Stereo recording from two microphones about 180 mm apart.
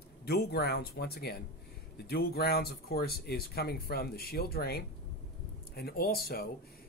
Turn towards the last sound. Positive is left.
turn(degrees=60)  # may be behind; listen again after turning